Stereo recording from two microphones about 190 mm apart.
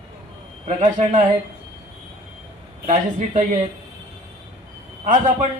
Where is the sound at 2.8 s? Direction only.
40° right (ahead or behind).